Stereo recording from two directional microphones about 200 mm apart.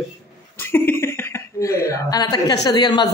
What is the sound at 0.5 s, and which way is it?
Speech, 10° left (ahead or behind).